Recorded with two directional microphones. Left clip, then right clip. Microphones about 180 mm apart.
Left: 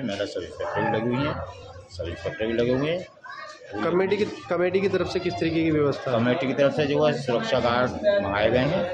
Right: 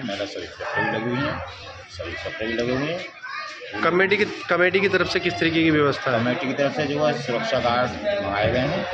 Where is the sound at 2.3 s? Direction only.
25° left (ahead or behind).